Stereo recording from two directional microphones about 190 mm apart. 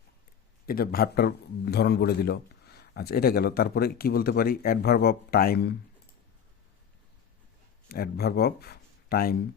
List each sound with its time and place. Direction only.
0.6 s a man's voice: 50° left (ahead or behind)
7.9 s speech: 55° left (ahead or behind)